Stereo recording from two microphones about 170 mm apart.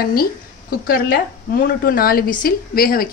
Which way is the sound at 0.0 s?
60° left (ahead or behind).